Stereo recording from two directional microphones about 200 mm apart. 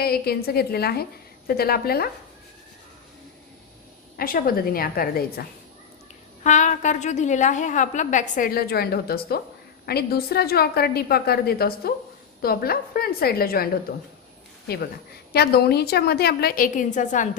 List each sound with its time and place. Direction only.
0.0 s a woman's voice: 50° left (ahead or behind)
4.2 s a woman's voice: 45° left (ahead or behind)
6.4 s a woman's voice: 35° left (ahead or behind)
14.7 s a woman's voice: 55° left (ahead or behind)